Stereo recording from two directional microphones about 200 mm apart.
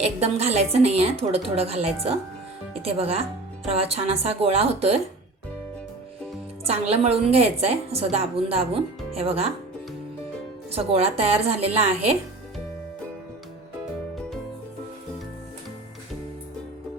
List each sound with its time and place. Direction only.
0.0 s a woman's voice: 30° right (ahead or behind)
6.7 s a woman's voice: 30° right (ahead or behind)
10.7 s a woman's voice: 30° right (ahead or behind)